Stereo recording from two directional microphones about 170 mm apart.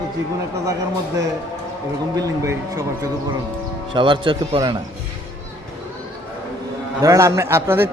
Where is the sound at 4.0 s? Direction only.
30° right (ahead or behind).